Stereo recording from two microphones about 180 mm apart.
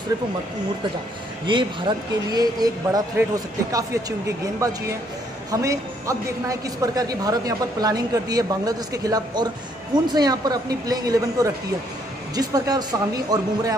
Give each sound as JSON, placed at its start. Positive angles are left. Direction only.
{"t": 1.5, "sound": "a woman's voice", "side_deg": -25}
{"t": 5.5, "sound": "a woman's voice", "side_deg": -15}